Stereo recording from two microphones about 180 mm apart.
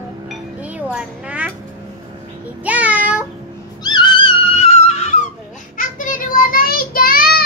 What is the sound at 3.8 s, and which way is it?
Dog, 25° left (ahead or behind).